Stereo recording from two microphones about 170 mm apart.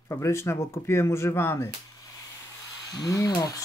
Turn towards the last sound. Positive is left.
turn(degrees=20)  # may be behind; listen again after turning